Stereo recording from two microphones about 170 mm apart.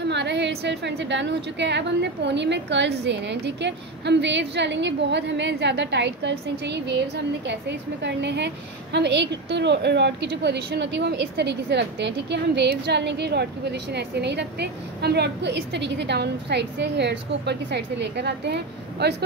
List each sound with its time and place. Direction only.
0.0 s a woman's voice: 90° right